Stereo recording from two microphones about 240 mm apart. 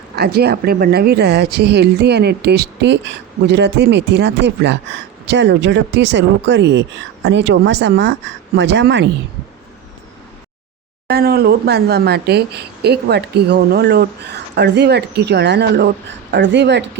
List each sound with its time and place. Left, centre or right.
0.2 s speech: right
11.1 s speech: right